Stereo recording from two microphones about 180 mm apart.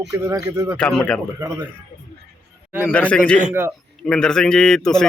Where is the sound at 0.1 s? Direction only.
20° right (ahead or behind).